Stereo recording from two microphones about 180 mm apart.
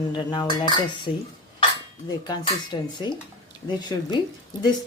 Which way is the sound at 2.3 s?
25° left (ahead or behind).